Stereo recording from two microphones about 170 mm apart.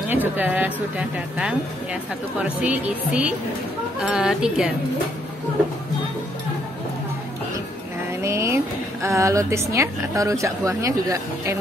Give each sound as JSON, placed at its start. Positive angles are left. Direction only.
{"t": 0.1, "sound": "speech", "side_deg": -10}
{"t": 8.2, "sound": "vehicle", "side_deg": -15}
{"t": 9.0, "sound": "speech", "side_deg": -15}